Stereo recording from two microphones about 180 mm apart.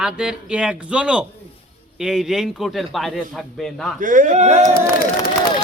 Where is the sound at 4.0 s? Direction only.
50° right (ahead or behind).